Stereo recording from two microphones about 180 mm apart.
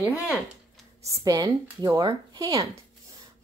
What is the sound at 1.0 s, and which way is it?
Speech, 20° right (ahead or behind).